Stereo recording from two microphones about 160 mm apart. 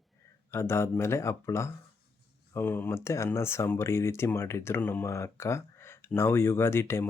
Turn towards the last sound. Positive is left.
turn(degrees=15)  # may be behind; listen again after turning